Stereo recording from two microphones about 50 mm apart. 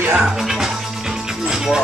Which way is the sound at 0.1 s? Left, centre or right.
Centre.